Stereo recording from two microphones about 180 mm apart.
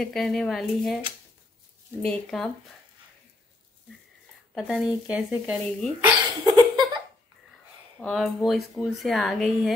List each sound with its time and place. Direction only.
0.0 s speech: 5° left (ahead or behind)
4.6 s speech: 5° right (ahead or behind)
6.4 s a sound: 20° right (ahead or behind)
8.0 s speech: centre (ahead or behind)